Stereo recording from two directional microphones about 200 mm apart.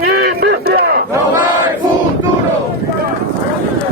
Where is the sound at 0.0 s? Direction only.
50° right (ahead or behind).